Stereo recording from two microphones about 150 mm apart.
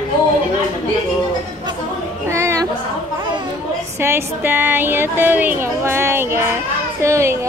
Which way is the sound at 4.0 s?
15° right (ahead or behind).